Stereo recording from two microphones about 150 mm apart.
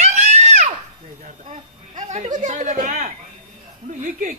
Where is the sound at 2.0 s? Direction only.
55° right (ahead or behind).